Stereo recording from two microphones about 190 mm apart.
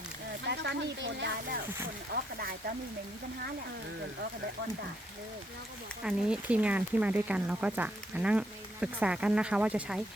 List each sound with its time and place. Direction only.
0.4 s speech: 65° right (ahead or behind)
2.1 s speech: 50° right (ahead or behind)
6.0 s speech: 5° right (ahead or behind)